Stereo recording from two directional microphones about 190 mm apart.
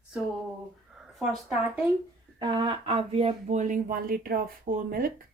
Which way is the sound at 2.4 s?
25° right (ahead or behind).